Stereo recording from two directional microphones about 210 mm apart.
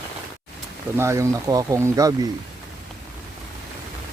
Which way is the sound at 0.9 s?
15° right (ahead or behind).